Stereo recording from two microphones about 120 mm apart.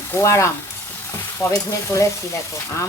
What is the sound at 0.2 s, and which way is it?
Frying, 25° left (ahead or behind).